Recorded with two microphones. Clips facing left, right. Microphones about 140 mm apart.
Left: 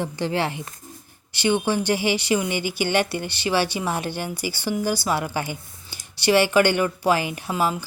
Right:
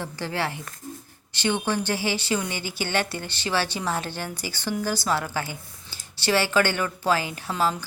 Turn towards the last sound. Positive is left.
turn(degrees=10)  # may be behind; listen again after turning